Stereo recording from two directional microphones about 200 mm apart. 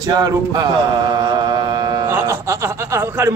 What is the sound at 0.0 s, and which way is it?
Mantra, 20° right (ahead or behind).